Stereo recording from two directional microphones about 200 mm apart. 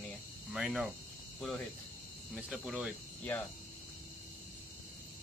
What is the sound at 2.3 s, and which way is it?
Speech, centre (ahead or behind).